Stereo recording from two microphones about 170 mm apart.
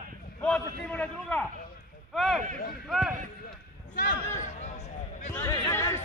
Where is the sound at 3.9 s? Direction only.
90° left.